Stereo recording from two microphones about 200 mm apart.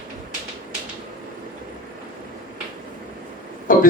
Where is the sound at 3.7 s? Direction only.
45° left (ahead or behind).